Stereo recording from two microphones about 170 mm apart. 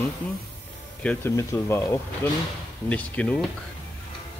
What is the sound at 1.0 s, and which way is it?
Speech, 5° left (ahead or behind).